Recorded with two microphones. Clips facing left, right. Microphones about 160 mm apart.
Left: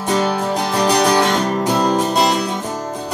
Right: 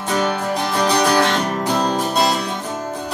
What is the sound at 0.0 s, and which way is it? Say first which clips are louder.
Music: left 2 dB; 10° left (ahead or behind).